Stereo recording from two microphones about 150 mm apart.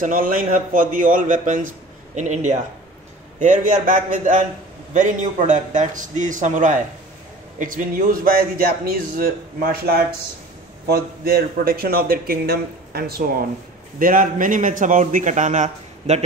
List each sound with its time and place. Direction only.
0.0 s a man's voice: 65° right (ahead or behind)
3.8 s a man's voice: 60° right (ahead or behind); by 13.3 s 90° right
13.9 s a man's voice: 65° right (ahead or behind)